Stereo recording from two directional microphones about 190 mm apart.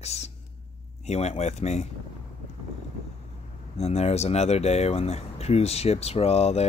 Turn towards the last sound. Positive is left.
turn(degrees=35)  # may be behind; listen again after turning